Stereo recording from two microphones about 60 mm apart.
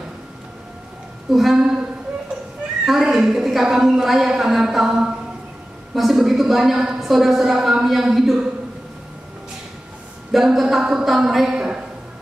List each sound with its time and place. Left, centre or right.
1.3 s a woman's voice: centre
2.8 s a woman's voice: centre
10.3 s speech: centre
11.1 s a sound: centre